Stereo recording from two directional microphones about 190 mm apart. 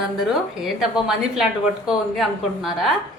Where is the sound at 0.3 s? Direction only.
Centre (ahead or behind).